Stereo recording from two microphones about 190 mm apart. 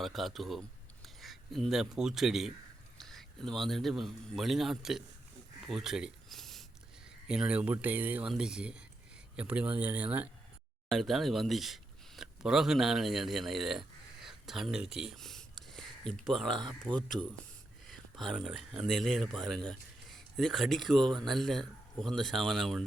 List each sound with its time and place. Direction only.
0.0 s a man's voice: centre (ahead or behind)
5.6 s a sound: centre (ahead or behind)
7.3 s speech: 5° right (ahead or behind)
14.3 s a sound: centre (ahead or behind)
17.1 s speech: 15° right (ahead or behind)
17.8 s speech: centre (ahead or behind)